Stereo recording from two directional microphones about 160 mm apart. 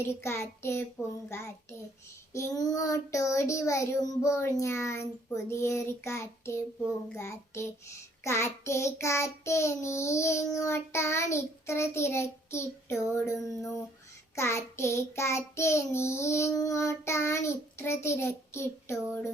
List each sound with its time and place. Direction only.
0.0 s child singing: 15° left (ahead or behind)
2.3 s child singing: 20° left (ahead or behind)